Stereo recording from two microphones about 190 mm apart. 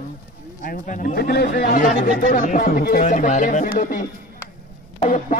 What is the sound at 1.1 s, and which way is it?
A man's voice, 60° left (ahead or behind).